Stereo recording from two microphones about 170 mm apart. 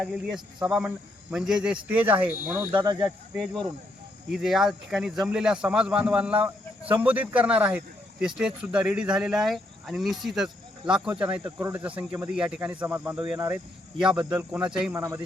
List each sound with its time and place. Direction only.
0.0 s speech: centre (ahead or behind)
2.7 s speech: 25° right (ahead or behind)
3.3 s speech: 5° left (ahead or behind)
14.9 s speech: 15° right (ahead or behind)